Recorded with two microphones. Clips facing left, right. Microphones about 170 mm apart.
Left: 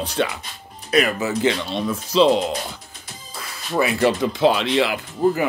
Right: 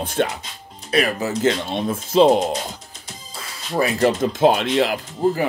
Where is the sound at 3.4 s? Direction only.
40° right (ahead or behind).